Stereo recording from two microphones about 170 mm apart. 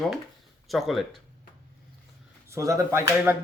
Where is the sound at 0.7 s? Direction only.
Centre (ahead or behind).